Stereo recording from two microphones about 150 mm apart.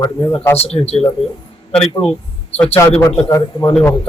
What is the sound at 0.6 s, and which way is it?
Speech, 45° left (ahead or behind).